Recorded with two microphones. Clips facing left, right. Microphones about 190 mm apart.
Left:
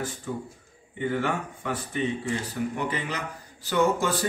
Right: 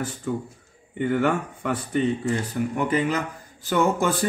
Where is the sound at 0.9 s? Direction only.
55° right (ahead or behind).